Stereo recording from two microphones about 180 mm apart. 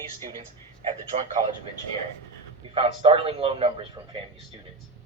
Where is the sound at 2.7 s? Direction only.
30° right (ahead or behind).